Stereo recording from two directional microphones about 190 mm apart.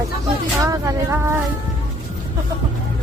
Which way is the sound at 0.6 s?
15° right (ahead or behind).